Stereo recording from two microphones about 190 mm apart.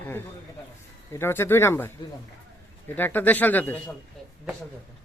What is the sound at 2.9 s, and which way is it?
Speech, 10° left (ahead or behind).